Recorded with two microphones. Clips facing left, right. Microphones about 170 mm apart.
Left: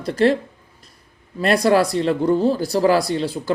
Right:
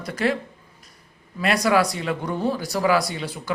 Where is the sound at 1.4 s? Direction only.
30° left (ahead or behind).